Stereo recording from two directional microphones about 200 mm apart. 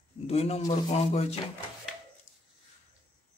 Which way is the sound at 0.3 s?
30° left (ahead or behind).